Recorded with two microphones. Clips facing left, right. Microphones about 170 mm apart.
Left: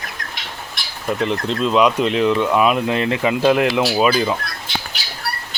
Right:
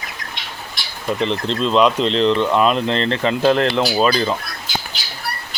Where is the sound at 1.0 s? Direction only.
5° left (ahead or behind).